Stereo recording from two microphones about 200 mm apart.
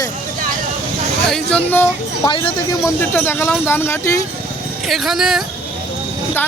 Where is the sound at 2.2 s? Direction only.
20° left (ahead or behind).